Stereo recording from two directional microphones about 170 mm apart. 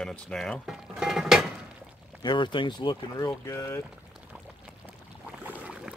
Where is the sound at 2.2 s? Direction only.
30° left (ahead or behind).